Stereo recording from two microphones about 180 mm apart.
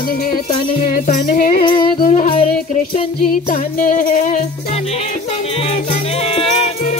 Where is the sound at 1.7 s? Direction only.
25° left (ahead or behind).